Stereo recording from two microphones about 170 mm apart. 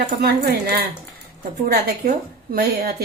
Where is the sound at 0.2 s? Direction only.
70° right (ahead or behind).